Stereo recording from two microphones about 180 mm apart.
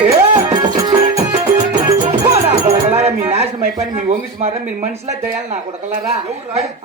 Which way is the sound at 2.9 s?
35° right (ahead or behind).